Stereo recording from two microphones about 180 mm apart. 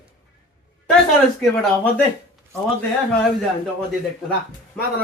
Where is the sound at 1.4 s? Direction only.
5° left (ahead or behind).